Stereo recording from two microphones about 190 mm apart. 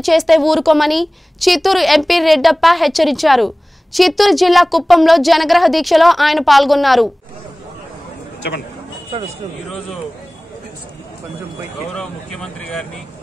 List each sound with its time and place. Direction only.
0.0 s a woman's voice: centre (ahead or behind)
11.9 s a woman's voice: centre (ahead or behind)